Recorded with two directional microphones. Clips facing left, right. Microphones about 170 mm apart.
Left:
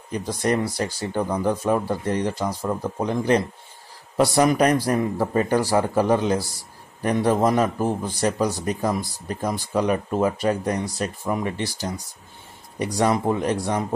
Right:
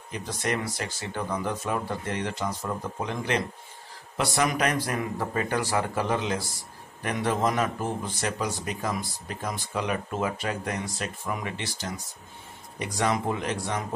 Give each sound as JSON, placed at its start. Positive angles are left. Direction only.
{"t": 0.1, "sound": "a man's voice", "side_deg": 35}